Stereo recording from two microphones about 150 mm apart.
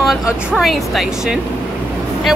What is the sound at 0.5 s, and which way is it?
Speech, centre (ahead or behind).